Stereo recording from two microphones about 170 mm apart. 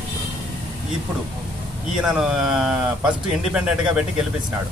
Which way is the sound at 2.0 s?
5° right (ahead or behind).